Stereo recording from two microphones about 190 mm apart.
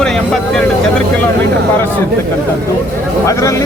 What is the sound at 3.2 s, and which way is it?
Speech, 15° left (ahead or behind).